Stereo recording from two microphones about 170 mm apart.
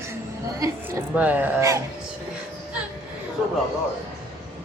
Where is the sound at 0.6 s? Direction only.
15° right (ahead or behind).